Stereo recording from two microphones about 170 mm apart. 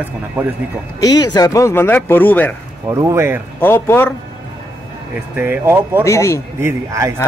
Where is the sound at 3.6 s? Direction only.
10° left (ahead or behind).